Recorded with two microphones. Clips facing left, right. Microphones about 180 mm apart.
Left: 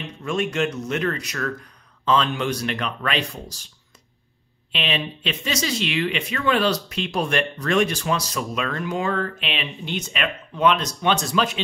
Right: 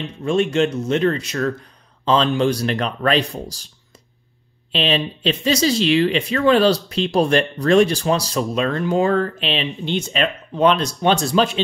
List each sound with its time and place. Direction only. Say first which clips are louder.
0.0 s speech: right 6 dB; 30° right (ahead or behind)
4.7 s speech: right 6 dB; 35° right (ahead or behind)